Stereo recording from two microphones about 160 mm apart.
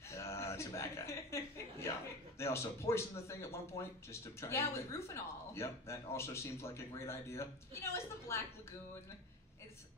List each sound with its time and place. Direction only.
0.1 s chuckle: 15° left (ahead or behind)
2.3 s speech: 15° left (ahead or behind)